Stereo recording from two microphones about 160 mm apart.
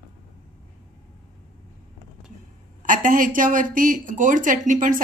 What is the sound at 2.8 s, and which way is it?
A woman's voice, 55° right (ahead or behind).